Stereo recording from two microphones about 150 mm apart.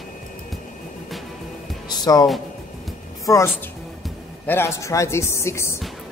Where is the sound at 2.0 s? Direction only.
25° left (ahead or behind).